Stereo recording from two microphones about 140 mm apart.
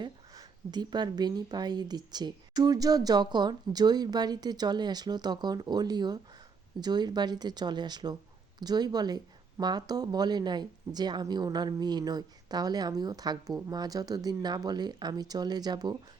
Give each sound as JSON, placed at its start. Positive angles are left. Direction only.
{"t": 0.0, "sound": "speech", "side_deg": -30}